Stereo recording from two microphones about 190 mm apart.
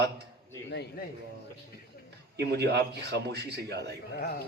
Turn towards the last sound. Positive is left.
turn(degrees=-60)  # may be behind; listen again after turning